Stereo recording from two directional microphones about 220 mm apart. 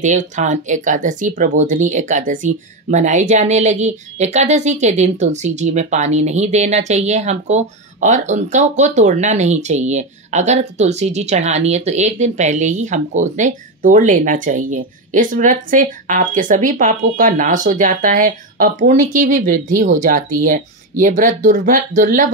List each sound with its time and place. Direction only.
0.0 s speech: 35° right (ahead or behind)